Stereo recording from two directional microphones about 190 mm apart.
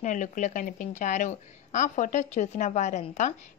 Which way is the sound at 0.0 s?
40° left (ahead or behind).